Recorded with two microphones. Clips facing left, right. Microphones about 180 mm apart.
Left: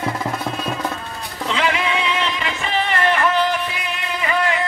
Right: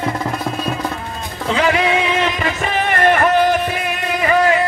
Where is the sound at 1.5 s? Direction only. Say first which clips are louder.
Right 5 dB; 40° right (ahead or behind).